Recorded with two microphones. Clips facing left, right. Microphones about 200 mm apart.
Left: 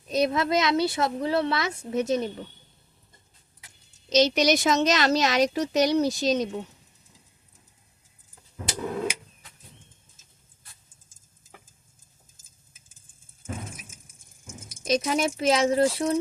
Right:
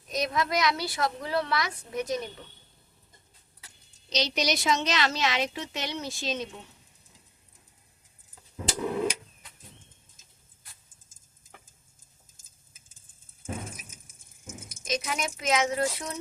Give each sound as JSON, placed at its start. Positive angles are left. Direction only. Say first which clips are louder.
{"t": 0.1, "sound": "speech", "louder": "left 5 dB", "side_deg": 30}
{"t": 4.1, "sound": "a woman's voice", "louder": "left 8 dB", "side_deg": 50}
{"t": 14.8, "sound": "a woman's voice", "louder": "left 8 dB", "side_deg": 35}